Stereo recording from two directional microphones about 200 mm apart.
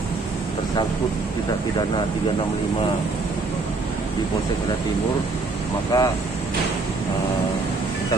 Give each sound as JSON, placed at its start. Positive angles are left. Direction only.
{"t": 5.9, "sound": "speech", "side_deg": 15}